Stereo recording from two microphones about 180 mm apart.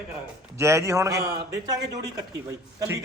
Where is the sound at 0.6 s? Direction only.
15° right (ahead or behind).